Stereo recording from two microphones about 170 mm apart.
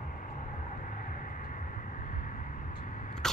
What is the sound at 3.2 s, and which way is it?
Vehicle, 5° left (ahead or behind).